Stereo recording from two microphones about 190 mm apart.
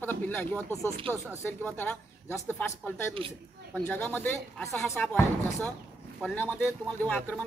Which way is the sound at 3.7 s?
5° left (ahead or behind).